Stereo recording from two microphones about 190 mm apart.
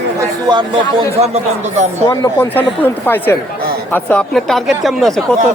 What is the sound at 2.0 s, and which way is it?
A woman's voice, 15° left (ahead or behind).